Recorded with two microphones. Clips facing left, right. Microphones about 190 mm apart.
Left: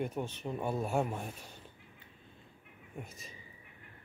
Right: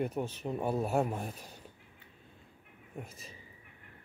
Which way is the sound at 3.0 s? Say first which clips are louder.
Right 1 dB; 35° right (ahead or behind).